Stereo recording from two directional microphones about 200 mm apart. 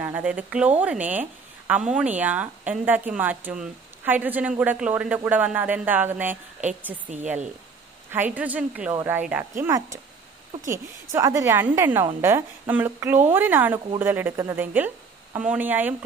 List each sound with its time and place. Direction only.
0.0 s a woman's voice: 5° right (ahead or behind)
8.1 s speech: 10° right (ahead or behind)